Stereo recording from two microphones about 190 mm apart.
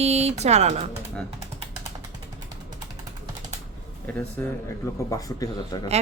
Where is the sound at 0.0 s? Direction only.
35° right (ahead or behind).